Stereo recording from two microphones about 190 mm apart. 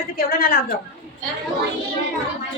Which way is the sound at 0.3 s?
50° left (ahead or behind).